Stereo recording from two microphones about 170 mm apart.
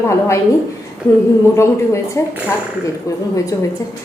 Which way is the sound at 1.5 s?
15° left (ahead or behind).